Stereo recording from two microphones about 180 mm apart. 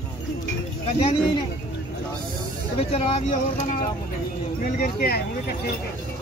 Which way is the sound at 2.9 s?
35° left (ahead or behind).